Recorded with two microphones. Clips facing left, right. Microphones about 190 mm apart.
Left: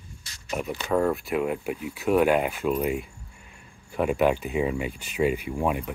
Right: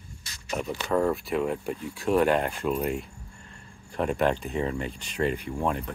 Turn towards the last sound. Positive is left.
turn(degrees=10)  # may be behind; listen again after turning